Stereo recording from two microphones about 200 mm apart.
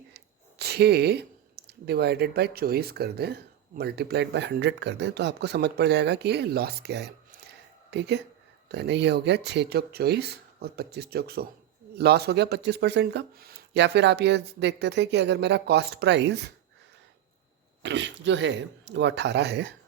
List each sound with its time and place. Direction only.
0.6 s speech: 55° right (ahead or behind)
17.8 s speech: 65° right (ahead or behind)